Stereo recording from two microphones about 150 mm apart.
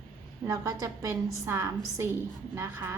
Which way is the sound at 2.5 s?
15° right (ahead or behind).